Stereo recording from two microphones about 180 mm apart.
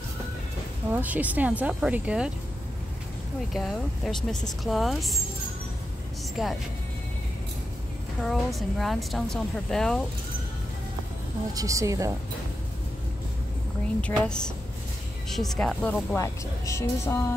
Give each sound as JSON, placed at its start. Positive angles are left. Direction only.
{"t": 0.9, "sound": "speech", "side_deg": -10}
{"t": 3.5, "sound": "a woman's voice", "side_deg": 0}
{"t": 6.4, "sound": "a woman's voice", "side_deg": 0}
{"t": 8.2, "sound": "a woman's voice", "side_deg": 0}
{"t": 11.5, "sound": "speech", "side_deg": -15}
{"t": 14.0, "sound": "a woman's voice", "side_deg": 5}